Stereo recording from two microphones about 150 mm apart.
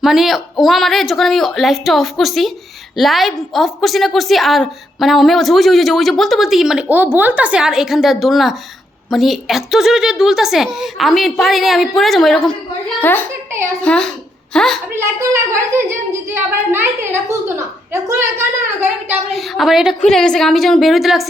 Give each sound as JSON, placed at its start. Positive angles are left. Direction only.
{"t": 0.0, "sound": "a woman's voice", "side_deg": 0}
{"t": 13.0, "sound": "a child's voice", "side_deg": 15}
{"t": 14.9, "sound": "a child's voice", "side_deg": -20}
{"t": 19.3, "sound": "a woman's voice", "side_deg": 0}